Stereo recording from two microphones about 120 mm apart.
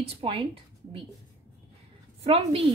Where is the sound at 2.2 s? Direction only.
50° right (ahead or behind).